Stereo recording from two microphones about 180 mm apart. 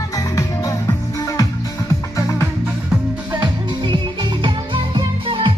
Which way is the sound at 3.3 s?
25° right (ahead or behind).